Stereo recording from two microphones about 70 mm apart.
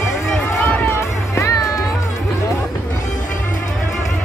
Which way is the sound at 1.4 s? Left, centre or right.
Left.